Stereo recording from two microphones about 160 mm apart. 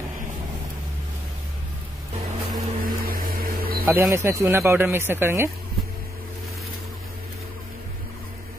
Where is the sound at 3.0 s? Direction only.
70° right (ahead or behind).